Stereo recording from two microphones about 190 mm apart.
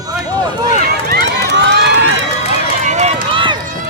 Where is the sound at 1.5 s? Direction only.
65° right (ahead or behind).